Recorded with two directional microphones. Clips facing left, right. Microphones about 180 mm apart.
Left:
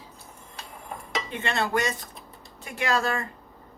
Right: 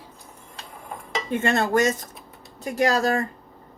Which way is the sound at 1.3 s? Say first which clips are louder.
Right 6 dB; 45° right (ahead or behind).